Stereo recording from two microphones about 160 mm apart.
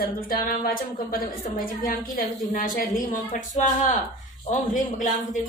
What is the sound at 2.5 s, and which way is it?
A woman's voice, 55° left (ahead or behind).